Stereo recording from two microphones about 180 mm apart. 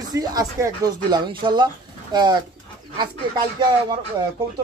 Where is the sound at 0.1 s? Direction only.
20° right (ahead or behind).